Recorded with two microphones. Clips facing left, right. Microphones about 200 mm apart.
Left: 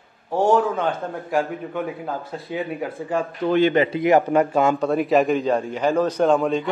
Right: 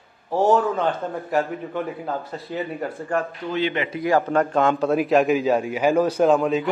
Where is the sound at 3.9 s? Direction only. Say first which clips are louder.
Left 3 dB; 20° left (ahead or behind).